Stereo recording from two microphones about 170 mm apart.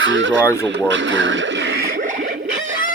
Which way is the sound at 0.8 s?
90° right.